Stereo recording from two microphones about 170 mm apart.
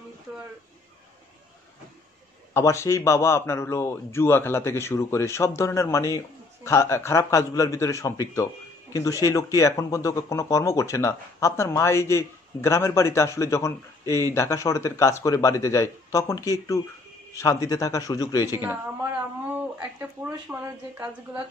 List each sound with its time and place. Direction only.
2.5 s a man's voice: 15° left (ahead or behind)
19.4 s speech: 10° right (ahead or behind)